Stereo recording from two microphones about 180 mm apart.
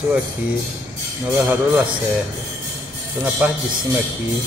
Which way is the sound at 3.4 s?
10° right (ahead or behind).